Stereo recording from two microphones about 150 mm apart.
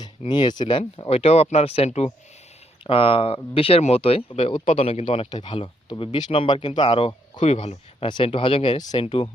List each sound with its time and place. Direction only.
0.3 s speech: 30° left (ahead or behind); by 7.8 s 45° left (ahead or behind)
8.0 s speech: 35° left (ahead or behind)